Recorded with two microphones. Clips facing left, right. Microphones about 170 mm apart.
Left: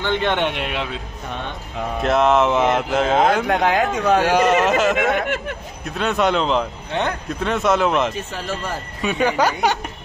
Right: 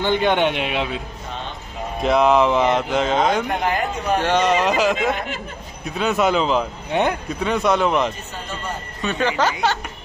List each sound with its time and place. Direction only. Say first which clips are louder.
0.0 s speech: right 2 dB; 5° right (ahead or behind)
2.0 s speech: right 1 dB; centre (ahead or behind)
3.4 s speech: left 4 dB; 90° left
4.2 s speech: right 1 dB; 10° left (ahead or behind)
5.1 s speech: left 6 dB; 70° left (ahead or behind)
5.9 s speech: even; centre (ahead or behind)
6.9 s speech: right 4 dB; 15° right (ahead or behind)
7.2 s speech: even; centre (ahead or behind)
8.1 s speech: left 5 dB; 90° left
9.0 s speech: left 2 dB; 10° left (ahead or behind)